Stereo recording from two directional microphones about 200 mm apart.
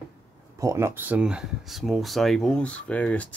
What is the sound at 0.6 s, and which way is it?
Speech, 15° right (ahead or behind).